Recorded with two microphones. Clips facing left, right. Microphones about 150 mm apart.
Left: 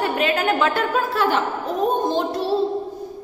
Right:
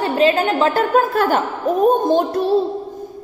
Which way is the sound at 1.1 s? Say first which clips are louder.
Right 3 dB; 50° right (ahead or behind).